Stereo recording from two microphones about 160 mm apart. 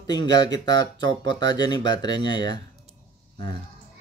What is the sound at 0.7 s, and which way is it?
Speech, 25° left (ahead or behind).